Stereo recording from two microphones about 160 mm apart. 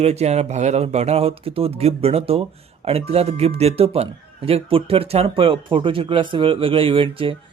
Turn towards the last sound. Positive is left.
turn(degrees=-35)  # may be behind; listen again after turning